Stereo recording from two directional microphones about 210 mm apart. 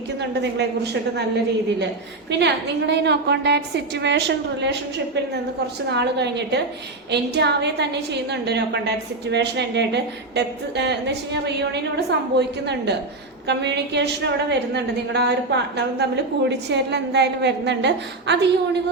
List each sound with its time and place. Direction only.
0.2 s a woman's voice: 55° right (ahead or behind)
2.4 s a woman's voice: 55° right (ahead or behind)